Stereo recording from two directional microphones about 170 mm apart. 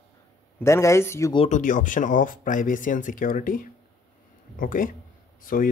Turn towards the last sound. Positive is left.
turn(degrees=55)  # may be behind; listen again after turning